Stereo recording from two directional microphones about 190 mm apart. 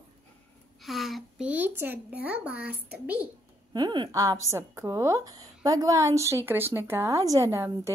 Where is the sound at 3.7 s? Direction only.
25° right (ahead or behind).